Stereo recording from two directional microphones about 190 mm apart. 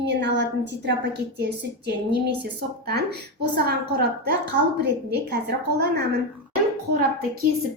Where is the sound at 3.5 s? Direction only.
55° right (ahead or behind).